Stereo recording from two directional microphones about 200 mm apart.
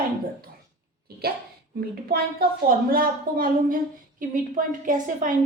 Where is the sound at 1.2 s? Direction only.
50° right (ahead or behind).